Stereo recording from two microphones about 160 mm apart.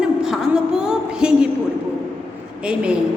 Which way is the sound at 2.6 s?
5° right (ahead or behind).